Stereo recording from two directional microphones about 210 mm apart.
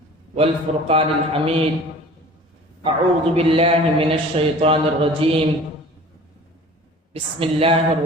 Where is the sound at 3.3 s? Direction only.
25° right (ahead or behind).